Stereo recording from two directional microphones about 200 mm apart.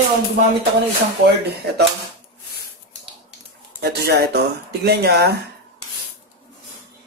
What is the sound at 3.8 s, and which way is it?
Speech, 55° right (ahead or behind).